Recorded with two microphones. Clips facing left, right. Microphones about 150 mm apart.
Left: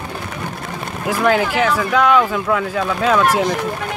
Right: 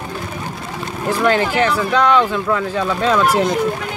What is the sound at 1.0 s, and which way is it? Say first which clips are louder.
Speech: even; 5° left (ahead or behind).